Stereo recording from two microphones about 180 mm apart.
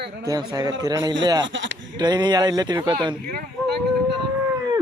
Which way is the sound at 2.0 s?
25° right (ahead or behind).